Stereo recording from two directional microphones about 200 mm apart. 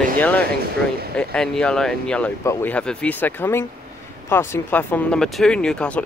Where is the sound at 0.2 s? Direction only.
10° left (ahead or behind).